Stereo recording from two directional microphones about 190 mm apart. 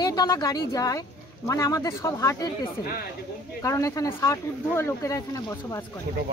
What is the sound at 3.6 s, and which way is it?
Speech, 15° left (ahead or behind).